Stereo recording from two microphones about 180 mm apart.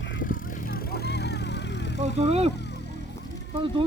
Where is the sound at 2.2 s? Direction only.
35° right (ahead or behind).